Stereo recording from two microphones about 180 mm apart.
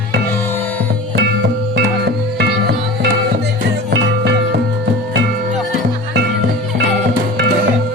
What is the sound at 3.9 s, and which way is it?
Music, 70° right (ahead or behind).